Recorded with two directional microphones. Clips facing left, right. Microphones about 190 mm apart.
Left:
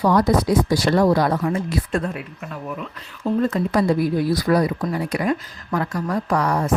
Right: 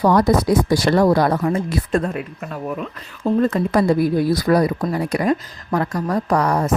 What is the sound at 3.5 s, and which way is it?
Speech, 50° right (ahead or behind).